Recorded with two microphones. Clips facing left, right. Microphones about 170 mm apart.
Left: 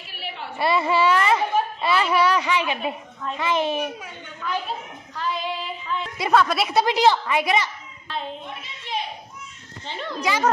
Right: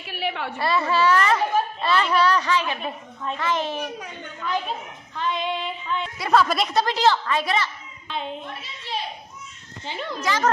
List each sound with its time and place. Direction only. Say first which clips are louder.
0.0 s a sound: right 7 dB; 65° right (ahead or behind)
0.6 s a woman's voice: left 2 dB; 15° left (ahead or behind)
5.1 s female singing: right 2 dB; 5° left (ahead or behind)
6.3 s a woman's voice: even; centre (ahead or behind)
9.8 s a woman's voice: even; centre (ahead or behind)
10.2 s a woman's voice: left 1 dB; 10° left (ahead or behind)